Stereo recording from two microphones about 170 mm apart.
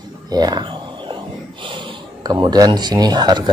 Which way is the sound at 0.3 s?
25° right (ahead or behind).